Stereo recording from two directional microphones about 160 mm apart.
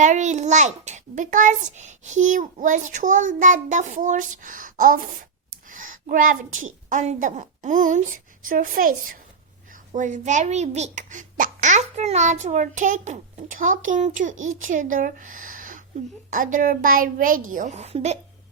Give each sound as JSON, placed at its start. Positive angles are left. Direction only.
{"t": 0.0, "sound": "a child's voice", "side_deg": -50}